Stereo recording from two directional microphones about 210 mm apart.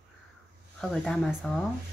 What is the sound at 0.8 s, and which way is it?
Speech, centre (ahead or behind).